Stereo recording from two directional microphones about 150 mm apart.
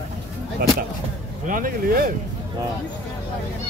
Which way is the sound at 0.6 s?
75° right (ahead or behind).